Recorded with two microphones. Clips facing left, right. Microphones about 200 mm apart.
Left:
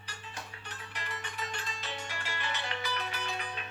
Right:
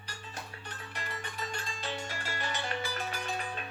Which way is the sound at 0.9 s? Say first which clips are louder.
Even; 45° right (ahead or behind).